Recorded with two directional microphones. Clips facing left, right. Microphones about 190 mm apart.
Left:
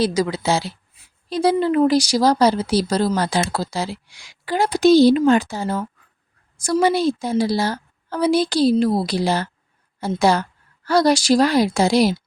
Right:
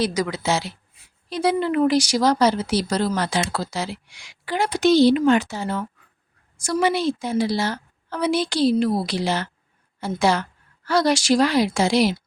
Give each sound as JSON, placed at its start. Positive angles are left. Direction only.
{"t": 0.0, "sound": "speech", "side_deg": 30}